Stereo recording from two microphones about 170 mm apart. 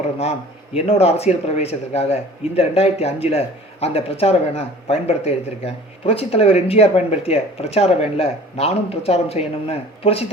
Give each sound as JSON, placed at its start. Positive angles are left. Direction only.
{"t": 0.2, "sound": "speech", "side_deg": 40}